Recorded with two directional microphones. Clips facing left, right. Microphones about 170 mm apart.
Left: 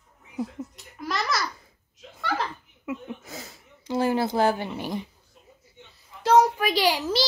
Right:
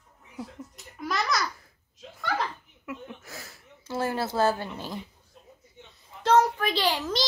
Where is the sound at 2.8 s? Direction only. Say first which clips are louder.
Left 5 dB; 20° left (ahead or behind).